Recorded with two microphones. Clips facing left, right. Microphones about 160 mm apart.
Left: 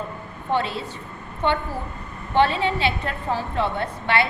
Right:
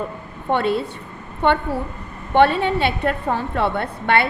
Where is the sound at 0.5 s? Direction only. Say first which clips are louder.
Right 5 dB; 55° right (ahead or behind).